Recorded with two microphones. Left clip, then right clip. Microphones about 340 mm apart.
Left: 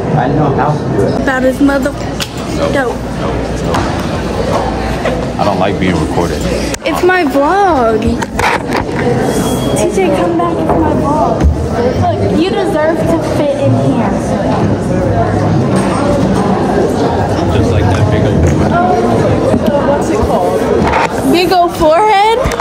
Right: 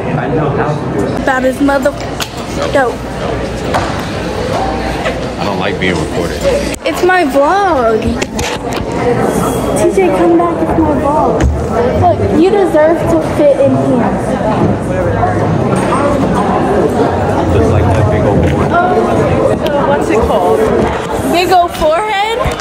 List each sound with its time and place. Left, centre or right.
1.2 s speech: centre
7.1 s speech: centre
21.3 s speech: centre